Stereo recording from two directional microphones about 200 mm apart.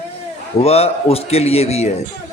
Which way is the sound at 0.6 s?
30° left (ahead or behind).